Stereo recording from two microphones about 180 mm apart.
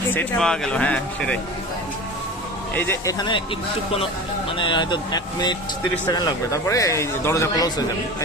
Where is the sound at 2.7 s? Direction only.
15° left (ahead or behind).